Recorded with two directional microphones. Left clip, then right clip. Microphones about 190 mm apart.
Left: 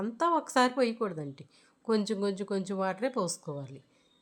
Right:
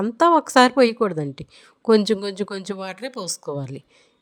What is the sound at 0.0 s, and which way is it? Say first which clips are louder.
A woman's voice: right 12 dB; 45° right (ahead or behind).